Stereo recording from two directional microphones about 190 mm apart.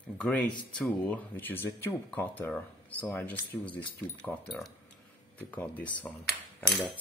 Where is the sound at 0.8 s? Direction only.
10° left (ahead or behind).